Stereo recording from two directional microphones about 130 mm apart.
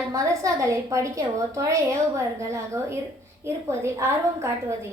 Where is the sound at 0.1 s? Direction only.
25° right (ahead or behind).